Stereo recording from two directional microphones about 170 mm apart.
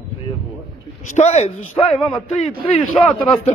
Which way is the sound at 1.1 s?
40° left (ahead or behind).